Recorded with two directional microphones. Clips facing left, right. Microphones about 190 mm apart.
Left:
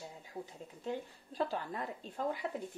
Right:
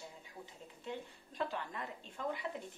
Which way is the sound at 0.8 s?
35° left (ahead or behind).